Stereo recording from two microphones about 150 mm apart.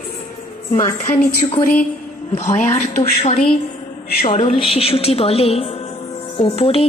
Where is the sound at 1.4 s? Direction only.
30° left (ahead or behind).